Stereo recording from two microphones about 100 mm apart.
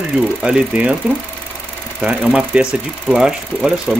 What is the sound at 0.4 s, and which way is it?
Speech, 10° right (ahead or behind).